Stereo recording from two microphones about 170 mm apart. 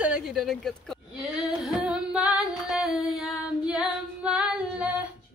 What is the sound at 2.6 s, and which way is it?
Female singing, centre (ahead or behind).